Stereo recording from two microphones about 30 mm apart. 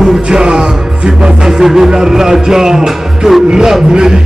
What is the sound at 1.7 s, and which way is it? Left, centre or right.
Music, centre.